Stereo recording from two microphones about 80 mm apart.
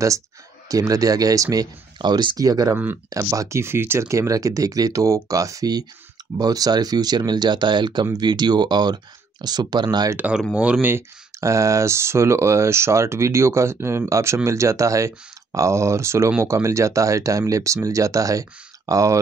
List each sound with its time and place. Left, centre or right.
0.7 s speech: right
10.5 s speech: centre
10.9 s speech: right